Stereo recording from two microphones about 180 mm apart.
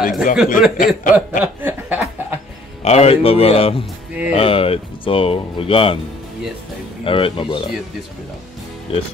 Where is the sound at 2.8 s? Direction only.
35° left (ahead or behind).